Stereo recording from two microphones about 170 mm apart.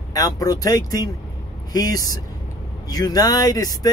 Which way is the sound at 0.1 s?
20° left (ahead or behind).